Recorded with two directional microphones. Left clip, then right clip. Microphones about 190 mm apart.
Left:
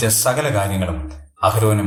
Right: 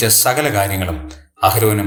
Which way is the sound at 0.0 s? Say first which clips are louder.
Right 3 dB; 35° right (ahead or behind).